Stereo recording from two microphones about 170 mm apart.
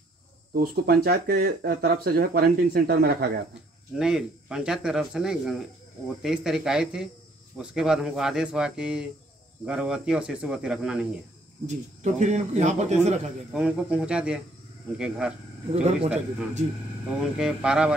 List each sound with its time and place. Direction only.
0.6 s speech: 60° right (ahead or behind)
3.9 s speech: 5° right (ahead or behind)
11.6 s speech: 45° right (ahead or behind)
13.5 s speech: 5° right (ahead or behind)
15.7 s speech: 40° right (ahead or behind)
17.2 s speech: 5° right (ahead or behind)